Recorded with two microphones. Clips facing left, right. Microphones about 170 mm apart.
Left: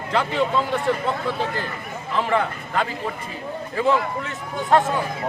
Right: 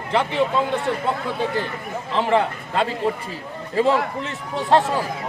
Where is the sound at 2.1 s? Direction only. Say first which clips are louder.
Right 2 dB; 25° right (ahead or behind).